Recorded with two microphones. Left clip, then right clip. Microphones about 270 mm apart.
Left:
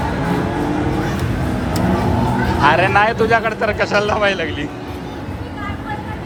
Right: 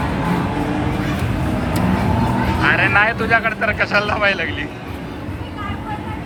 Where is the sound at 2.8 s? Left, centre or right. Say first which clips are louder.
Left 1 dB; centre.